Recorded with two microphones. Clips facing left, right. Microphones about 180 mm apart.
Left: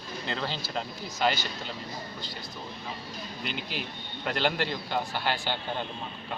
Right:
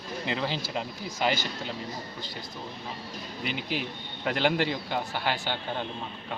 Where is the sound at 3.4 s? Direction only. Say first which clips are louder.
Right 4 dB; 55° right (ahead or behind).